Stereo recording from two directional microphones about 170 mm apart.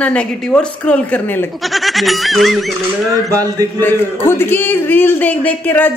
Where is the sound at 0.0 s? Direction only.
5° left (ahead or behind).